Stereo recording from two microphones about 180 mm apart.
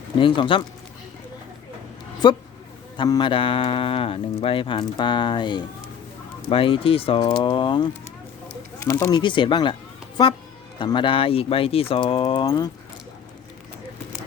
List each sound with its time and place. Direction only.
0.2 s speech: 30° left (ahead or behind)
2.2 s speech: 25° left (ahead or behind)
8.8 s speech: 15° left (ahead or behind)